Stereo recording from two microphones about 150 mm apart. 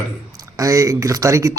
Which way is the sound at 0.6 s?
20° right (ahead or behind).